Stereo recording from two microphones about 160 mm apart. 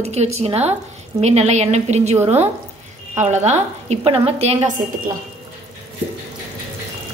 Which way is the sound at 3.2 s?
45° right (ahead or behind).